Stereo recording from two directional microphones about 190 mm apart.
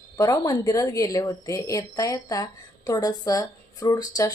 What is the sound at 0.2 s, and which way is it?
A woman's voice, 20° left (ahead or behind).